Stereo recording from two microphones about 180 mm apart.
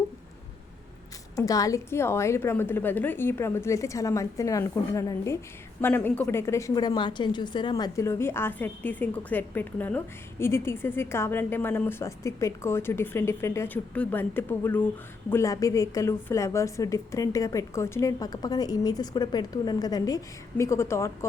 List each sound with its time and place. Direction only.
1.4 s a woman's voice: 20° left (ahead or behind)